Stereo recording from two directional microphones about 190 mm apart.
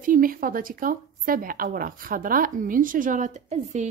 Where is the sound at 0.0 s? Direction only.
45° right (ahead or behind).